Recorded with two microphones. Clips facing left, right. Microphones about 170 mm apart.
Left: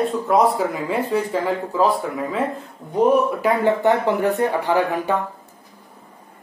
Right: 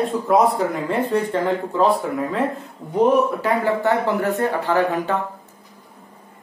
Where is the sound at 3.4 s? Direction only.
20° left (ahead or behind).